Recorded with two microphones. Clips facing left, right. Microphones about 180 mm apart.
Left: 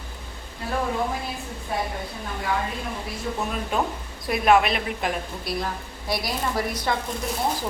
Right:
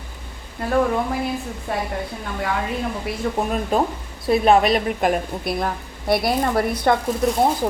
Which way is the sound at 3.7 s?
35° right (ahead or behind).